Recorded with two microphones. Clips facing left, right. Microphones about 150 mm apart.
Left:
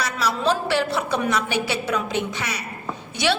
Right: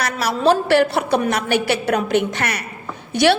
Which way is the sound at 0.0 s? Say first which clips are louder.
Right 5 dB; 60° right (ahead or behind).